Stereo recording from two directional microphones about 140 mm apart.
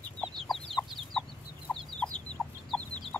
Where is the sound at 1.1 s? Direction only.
5° left (ahead or behind).